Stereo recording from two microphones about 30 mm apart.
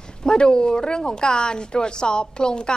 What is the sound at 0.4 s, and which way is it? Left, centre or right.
A woman's voice, left.